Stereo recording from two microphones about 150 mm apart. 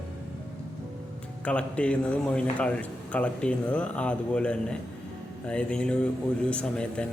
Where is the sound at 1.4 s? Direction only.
10° left (ahead or behind).